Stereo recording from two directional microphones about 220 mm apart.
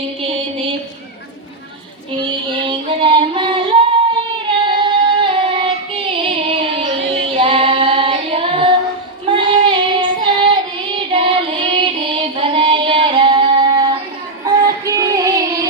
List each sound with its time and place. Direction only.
0.2 s a sound: 25° right (ahead or behind)
2.6 s music: 20° right (ahead or behind)
7.3 s child singing: 25° right (ahead or behind)
14.4 s music: 15° right (ahead or behind)